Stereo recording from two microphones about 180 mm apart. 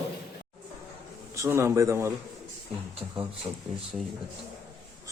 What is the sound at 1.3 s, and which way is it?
Speech, 15° right (ahead or behind).